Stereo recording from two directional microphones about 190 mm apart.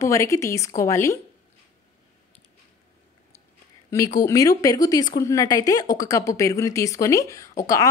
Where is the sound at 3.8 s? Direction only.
20° left (ahead or behind).